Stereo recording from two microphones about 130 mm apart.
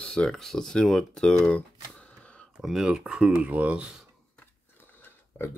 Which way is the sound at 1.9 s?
10° left (ahead or behind).